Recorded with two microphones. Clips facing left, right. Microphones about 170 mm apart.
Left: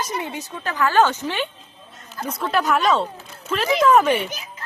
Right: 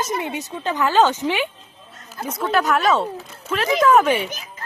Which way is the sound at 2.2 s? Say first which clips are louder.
Right 1 dB; centre (ahead or behind).